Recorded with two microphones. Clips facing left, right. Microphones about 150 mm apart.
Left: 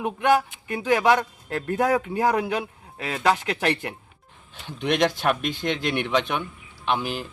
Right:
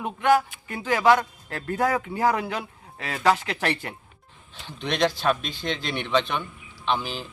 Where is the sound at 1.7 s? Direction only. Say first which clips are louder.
Left 2 dB; 15° left (ahead or behind).